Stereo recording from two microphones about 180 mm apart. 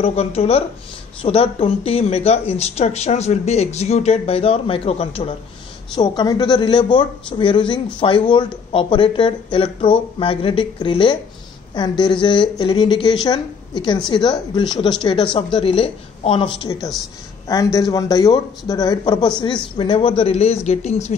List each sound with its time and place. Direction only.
0.0 s speech: 35° left (ahead or behind)